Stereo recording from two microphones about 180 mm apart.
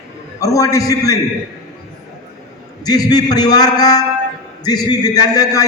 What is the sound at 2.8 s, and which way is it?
A man's voice, 20° left (ahead or behind).